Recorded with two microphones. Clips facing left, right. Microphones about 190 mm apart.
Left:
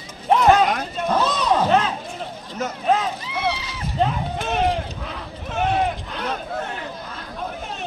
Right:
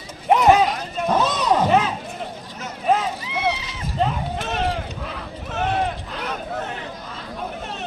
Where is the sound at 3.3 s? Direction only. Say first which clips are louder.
Right 1 dB; 20° right (ahead or behind).